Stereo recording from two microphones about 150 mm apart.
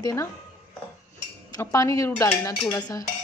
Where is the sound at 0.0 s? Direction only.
20° left (ahead or behind).